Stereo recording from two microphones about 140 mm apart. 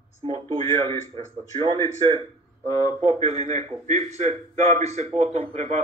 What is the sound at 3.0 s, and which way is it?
A man's voice, 50° right (ahead or behind).